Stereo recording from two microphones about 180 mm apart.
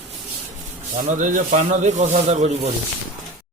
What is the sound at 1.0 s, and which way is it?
Speech, 45° right (ahead or behind).